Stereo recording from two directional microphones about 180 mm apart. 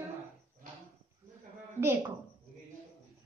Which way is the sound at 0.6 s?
50° right (ahead or behind).